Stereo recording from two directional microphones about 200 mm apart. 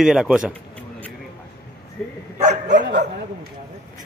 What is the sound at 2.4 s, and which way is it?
Bow-wow, 40° right (ahead or behind).